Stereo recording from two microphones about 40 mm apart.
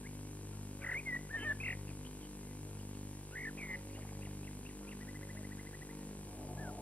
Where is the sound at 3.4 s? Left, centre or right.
Left.